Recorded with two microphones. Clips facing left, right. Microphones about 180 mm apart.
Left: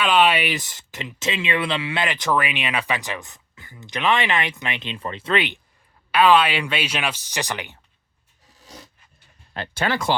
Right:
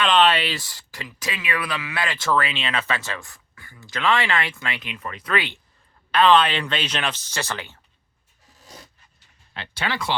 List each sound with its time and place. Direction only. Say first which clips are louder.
0.0 s speech: even; 10° left (ahead or behind)
6.1 s speech: left 1 dB; 10° left (ahead or behind)
9.6 s speech: left 4 dB; 45° left (ahead or behind)